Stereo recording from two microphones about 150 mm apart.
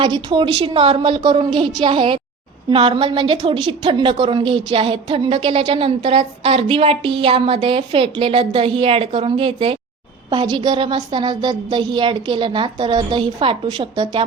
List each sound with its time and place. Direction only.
0.0 s a woman's voice: 30° right (ahead or behind)
10.2 s a woman's voice: 25° right (ahead or behind)